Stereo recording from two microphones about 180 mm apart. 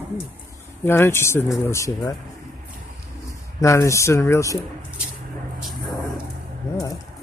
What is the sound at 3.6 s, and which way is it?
Speech, 15° left (ahead or behind).